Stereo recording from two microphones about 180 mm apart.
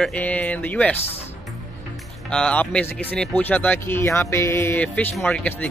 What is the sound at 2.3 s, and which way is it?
Speech, 5° left (ahead or behind).